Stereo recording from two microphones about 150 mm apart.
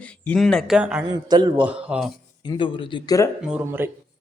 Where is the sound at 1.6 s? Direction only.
10° right (ahead or behind).